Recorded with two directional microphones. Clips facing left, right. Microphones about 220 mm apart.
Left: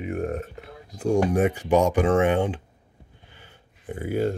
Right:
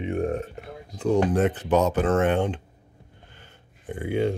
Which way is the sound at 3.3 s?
10° left (ahead or behind).